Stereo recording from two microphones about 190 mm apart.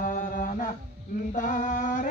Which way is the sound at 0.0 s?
45° left (ahead or behind).